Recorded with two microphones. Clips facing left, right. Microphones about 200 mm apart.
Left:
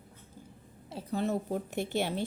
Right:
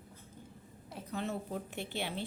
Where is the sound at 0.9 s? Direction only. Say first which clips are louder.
Left 7 dB; 30° left (ahead or behind).